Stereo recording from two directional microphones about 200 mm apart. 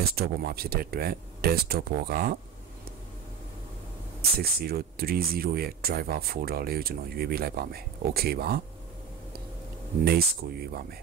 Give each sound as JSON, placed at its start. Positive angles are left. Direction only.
{"t": 0.1, "sound": "speech", "side_deg": -50}
{"t": 4.4, "sound": "speech", "side_deg": -50}
{"t": 10.0, "sound": "speech", "side_deg": -50}